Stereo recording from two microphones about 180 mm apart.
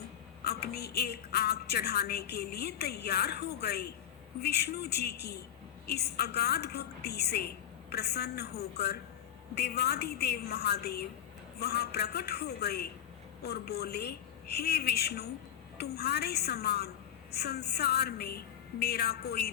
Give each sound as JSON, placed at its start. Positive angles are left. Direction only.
{"t": 0.4, "sound": "a woman's voice", "side_deg": 60}